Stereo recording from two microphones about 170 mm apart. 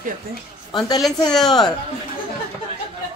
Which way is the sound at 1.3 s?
Centre (ahead or behind).